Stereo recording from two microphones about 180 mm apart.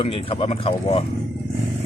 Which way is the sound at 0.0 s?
30° left (ahead or behind).